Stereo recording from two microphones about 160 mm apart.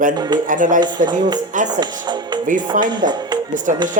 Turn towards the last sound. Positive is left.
turn(degrees=-55)  # may be behind; listen again after turning